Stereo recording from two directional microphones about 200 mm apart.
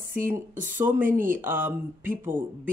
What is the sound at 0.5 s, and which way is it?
Speech, 40° right (ahead or behind).